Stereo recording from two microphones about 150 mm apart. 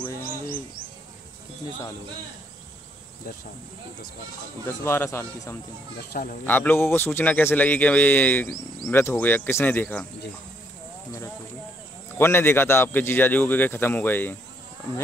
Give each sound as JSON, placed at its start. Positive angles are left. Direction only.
{"t": 0.2, "sound": "a sound", "side_deg": -70}
{"t": 4.6, "sound": "speech", "side_deg": 15}
{"t": 12.2, "sound": "speech", "side_deg": 15}